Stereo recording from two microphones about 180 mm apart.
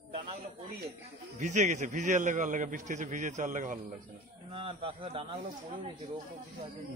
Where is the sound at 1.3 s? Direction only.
40° right (ahead or behind).